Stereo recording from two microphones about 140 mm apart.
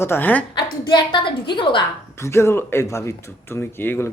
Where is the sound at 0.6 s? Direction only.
35° left (ahead or behind).